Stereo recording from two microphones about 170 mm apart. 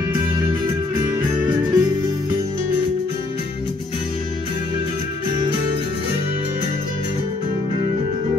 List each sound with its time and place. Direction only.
0.1 s music: 25° right (ahead or behind)